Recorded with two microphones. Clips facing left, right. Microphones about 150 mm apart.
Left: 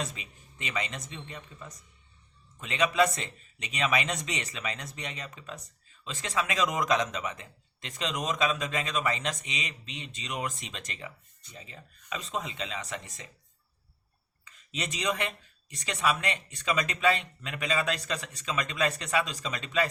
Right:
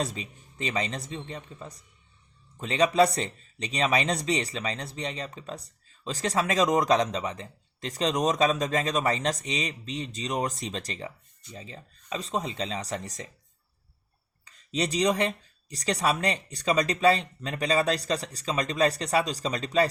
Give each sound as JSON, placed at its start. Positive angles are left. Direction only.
{"t": 0.0, "sound": "speech", "side_deg": -35}
{"t": 14.4, "sound": "speech", "side_deg": -35}